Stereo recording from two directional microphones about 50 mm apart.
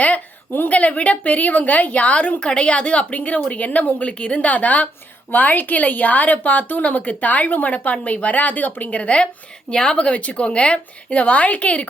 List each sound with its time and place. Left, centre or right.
0.0 s a woman's voice: left; by 10.1 s centre
10.1 s speech: left